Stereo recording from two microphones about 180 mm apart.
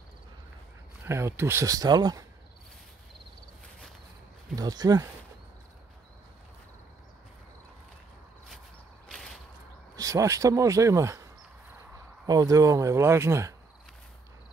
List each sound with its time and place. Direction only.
1.0 s speech: 15° right (ahead or behind)
4.6 s speech: 20° right (ahead or behind)
9.9 s speech: 20° right (ahead or behind)
12.3 s speech: 20° right (ahead or behind)